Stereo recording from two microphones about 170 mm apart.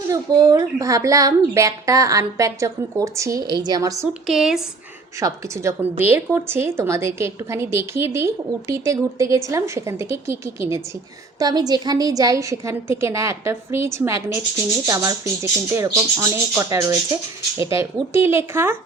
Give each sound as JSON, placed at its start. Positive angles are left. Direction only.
{"t": 0.1, "sound": "speech", "side_deg": -20}
{"t": 4.3, "sound": "speech", "side_deg": 0}
{"t": 5.2, "sound": "a woman's voice", "side_deg": -15}